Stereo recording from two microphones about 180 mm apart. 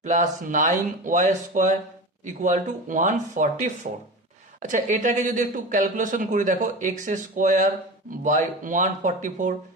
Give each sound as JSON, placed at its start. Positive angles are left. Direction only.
{"t": 0.0, "sound": "speech", "side_deg": -45}